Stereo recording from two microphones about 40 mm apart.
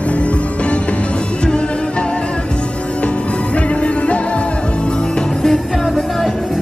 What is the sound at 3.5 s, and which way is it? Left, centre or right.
Music, left.